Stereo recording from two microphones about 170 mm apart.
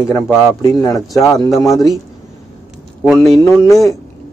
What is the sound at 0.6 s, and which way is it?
Speech, 20° left (ahead or behind).